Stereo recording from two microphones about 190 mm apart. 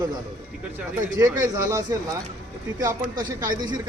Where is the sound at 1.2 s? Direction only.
15° right (ahead or behind).